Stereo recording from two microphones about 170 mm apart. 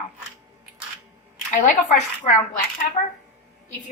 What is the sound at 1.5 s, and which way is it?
A woman's voice, 45° left (ahead or behind).